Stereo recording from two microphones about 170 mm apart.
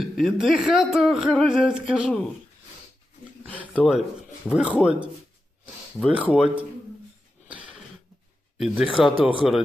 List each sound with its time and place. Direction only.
0.0 s speech: centre (ahead or behind)
3.6 s speech: 5° right (ahead or behind)
8.5 s speech: centre (ahead or behind)